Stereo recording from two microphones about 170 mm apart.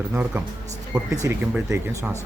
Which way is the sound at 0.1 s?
15° right (ahead or behind).